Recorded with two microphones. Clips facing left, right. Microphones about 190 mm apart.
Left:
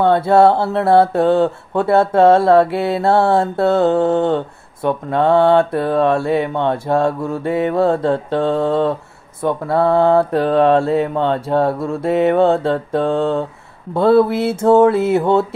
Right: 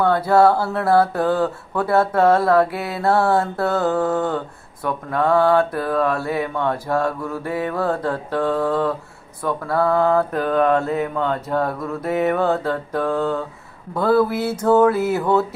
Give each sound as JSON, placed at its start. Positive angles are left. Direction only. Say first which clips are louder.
{"t": 0.0, "sound": "speech", "louder": "left 3 dB", "side_deg": 25}